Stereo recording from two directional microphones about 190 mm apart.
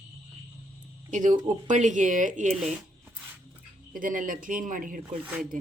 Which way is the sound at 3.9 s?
45° right (ahead or behind).